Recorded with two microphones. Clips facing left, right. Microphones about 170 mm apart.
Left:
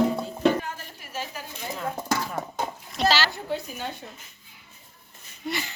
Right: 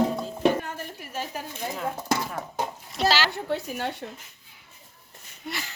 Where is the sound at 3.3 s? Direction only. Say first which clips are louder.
Right 2 dB; 70° right (ahead or behind).